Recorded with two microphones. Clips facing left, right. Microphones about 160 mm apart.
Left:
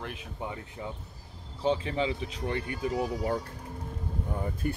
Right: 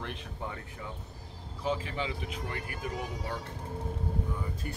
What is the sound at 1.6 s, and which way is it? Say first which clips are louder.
Speech: left 5 dB; 30° left (ahead or behind).